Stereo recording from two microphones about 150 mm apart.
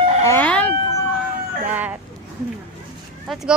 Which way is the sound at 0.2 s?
20° left (ahead or behind).